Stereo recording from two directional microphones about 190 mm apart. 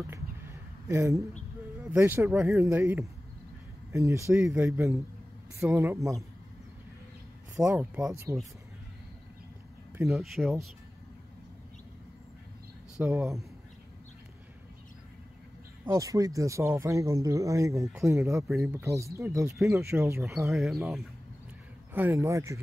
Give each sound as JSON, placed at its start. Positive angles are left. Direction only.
{"t": 0.0, "sound": "a sound", "side_deg": -15}
{"t": 1.8, "sound": "speech", "side_deg": -10}
{"t": 7.7, "sound": "speech", "side_deg": -5}
{"t": 8.1, "sound": "speech", "side_deg": -15}
{"t": 10.0, "sound": "speech", "side_deg": 0}
{"t": 13.0, "sound": "speech", "side_deg": -15}
{"t": 15.8, "sound": "speech", "side_deg": -20}
{"t": 20.5, "sound": "speech", "side_deg": 0}
{"t": 21.9, "sound": "speech", "side_deg": -10}